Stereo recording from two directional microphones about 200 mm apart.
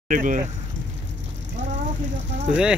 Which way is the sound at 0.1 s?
40° right (ahead or behind).